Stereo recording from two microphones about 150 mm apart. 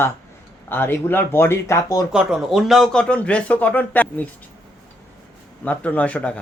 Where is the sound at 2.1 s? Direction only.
5° right (ahead or behind).